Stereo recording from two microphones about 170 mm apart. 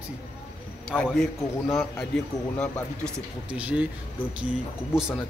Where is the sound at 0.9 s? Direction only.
5° left (ahead or behind).